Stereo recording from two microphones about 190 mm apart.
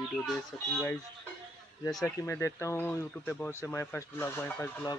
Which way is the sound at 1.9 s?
10° left (ahead or behind).